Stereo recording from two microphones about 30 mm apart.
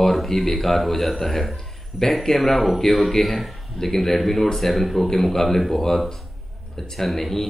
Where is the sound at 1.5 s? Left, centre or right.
Centre.